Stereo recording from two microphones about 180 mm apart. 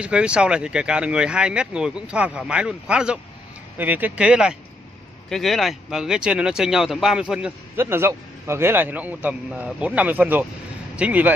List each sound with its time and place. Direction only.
0.0 s speech: 5° right (ahead or behind)